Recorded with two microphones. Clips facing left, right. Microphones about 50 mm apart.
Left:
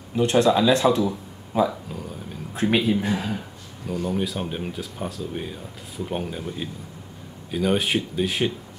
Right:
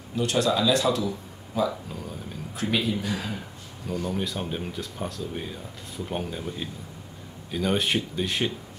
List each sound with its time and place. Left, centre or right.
0.1 s speech: left
1.7 s a sound: centre
2.5 s speech: left
3.8 s speech: centre